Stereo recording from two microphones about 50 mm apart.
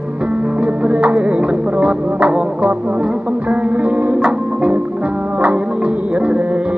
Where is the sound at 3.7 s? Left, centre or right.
Right.